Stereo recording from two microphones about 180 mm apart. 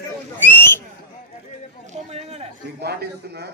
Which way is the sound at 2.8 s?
65° right (ahead or behind).